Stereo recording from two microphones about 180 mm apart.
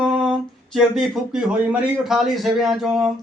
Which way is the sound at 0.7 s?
Centre (ahead or behind).